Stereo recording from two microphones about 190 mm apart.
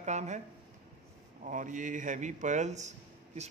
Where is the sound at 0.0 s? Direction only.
35° right (ahead or behind).